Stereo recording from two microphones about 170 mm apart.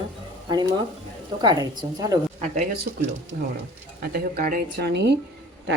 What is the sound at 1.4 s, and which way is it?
Speech, 25° right (ahead or behind).